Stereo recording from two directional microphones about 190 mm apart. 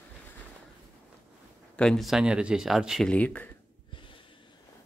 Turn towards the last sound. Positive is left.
turn(degrees=5)  # may be behind; listen again after turning